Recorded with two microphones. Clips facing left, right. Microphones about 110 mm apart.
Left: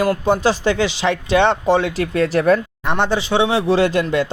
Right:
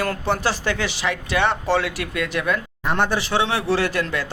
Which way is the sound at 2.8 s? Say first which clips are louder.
Left 2 dB; 20° left (ahead or behind).